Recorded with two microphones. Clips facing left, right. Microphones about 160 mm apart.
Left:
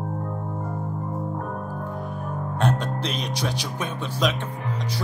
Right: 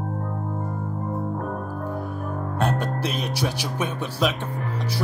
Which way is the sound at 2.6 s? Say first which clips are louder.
Even; 10° right (ahead or behind).